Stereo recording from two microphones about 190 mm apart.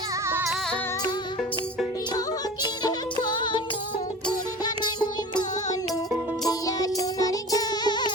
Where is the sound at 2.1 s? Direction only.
20° left (ahead or behind).